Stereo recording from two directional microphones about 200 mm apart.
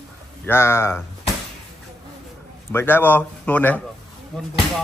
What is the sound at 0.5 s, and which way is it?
Speech, 10° left (ahead or behind).